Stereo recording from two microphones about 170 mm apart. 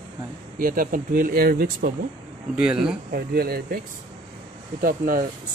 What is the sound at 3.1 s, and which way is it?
Speech, 65° right (ahead or behind).